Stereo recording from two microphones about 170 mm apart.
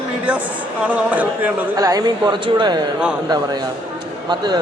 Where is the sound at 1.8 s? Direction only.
20° right (ahead or behind).